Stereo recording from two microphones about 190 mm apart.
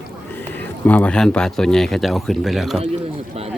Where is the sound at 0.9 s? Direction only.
5° left (ahead or behind).